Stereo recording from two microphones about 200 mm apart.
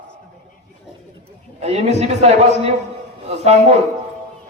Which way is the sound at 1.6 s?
30° right (ahead or behind).